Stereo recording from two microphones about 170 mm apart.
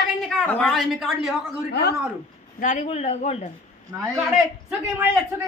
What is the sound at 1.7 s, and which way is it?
Speech, 80° left.